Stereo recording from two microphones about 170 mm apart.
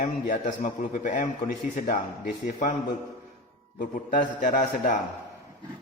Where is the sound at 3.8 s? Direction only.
55° left (ahead or behind).